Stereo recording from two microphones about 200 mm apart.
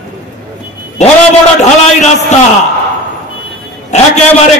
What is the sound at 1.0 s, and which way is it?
A man's voice, 35° left (ahead or behind).